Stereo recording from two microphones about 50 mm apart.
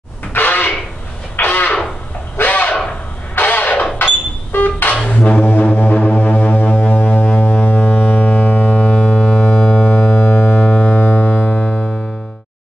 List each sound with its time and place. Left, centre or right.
0.3 s a sound: left
4.5 s music: left
5.4 s foghorn: left
7.6 s ship: left
9.8 s music: left